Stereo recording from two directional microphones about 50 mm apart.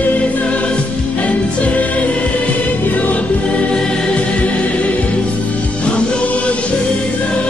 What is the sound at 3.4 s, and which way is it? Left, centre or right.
Music, centre.